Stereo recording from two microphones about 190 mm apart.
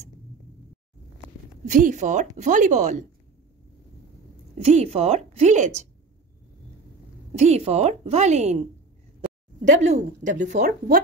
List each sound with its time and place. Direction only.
1.7 s a woman's voice: 45° right (ahead or behind)
4.6 s a woman's voice: 35° right (ahead or behind)
7.3 s a woman's voice: 35° right (ahead or behind)
9.7 s a woman's voice: 35° right (ahead or behind)